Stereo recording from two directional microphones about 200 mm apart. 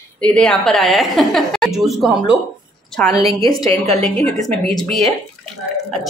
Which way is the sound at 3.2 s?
30° right (ahead or behind).